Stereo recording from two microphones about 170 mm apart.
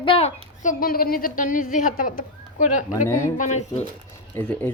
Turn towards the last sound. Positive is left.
turn(degrees=10)  # may be behind; listen again after turning